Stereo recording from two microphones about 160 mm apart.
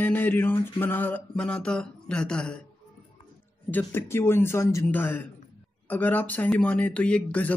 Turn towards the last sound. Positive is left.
turn(degrees=10)  # may be behind; listen again after turning